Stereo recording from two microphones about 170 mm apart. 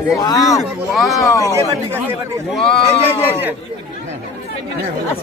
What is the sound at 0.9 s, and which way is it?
Speech, centre (ahead or behind).